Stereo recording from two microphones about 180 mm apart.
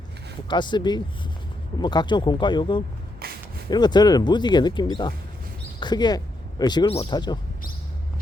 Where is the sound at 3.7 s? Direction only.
25° left (ahead or behind).